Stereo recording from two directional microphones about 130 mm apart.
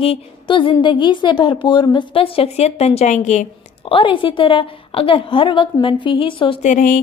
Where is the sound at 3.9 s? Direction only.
40° left (ahead or behind).